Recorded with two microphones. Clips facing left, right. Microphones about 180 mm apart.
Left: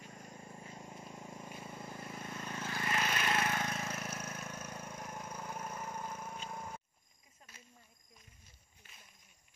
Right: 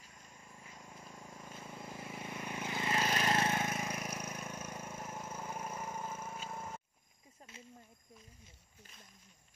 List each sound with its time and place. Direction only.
0.2 s vehicle: 40° left (ahead or behind); by 1.8 s 10° left (ahead or behind)
1.8 s vehicle: 5° right (ahead or behind)
3.0 s vehicle: 30° right (ahead or behind); by 6.8 s 5° right (ahead or behind)
7.5 s snake: 25° right (ahead or behind)